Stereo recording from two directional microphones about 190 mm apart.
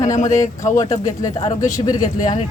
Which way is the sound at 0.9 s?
20° left (ahead or behind).